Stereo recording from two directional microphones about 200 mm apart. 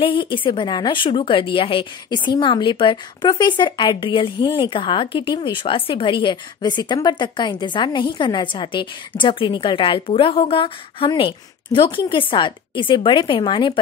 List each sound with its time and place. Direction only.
0.0 s speech: 25° left (ahead or behind)